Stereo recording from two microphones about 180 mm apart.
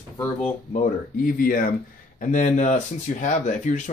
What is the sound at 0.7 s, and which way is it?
Speech, 50° left (ahead or behind).